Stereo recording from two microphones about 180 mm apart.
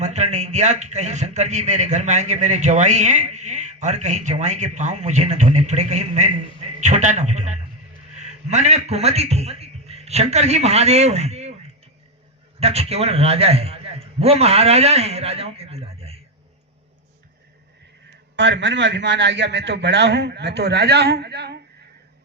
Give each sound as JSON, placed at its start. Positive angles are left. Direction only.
{"t": 0.0, "sound": "a man's voice", "side_deg": -40}
{"t": 12.5, "sound": "a man's voice", "side_deg": -35}
{"t": 18.3, "sound": "a man's voice", "side_deg": -85}